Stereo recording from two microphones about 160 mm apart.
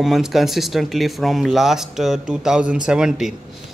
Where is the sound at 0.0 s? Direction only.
Centre (ahead or behind).